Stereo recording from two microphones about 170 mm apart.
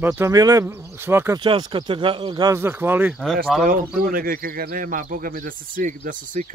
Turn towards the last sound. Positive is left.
turn(degrees=-50)  # may be behind; listen again after turning